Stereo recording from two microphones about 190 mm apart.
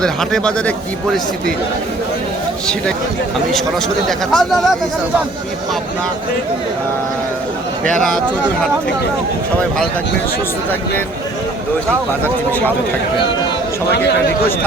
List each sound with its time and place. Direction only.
0.0 s speech: 5° left (ahead or behind)
4.3 s speech: centre (ahead or behind)
13.9 s speech: 60° left (ahead or behind)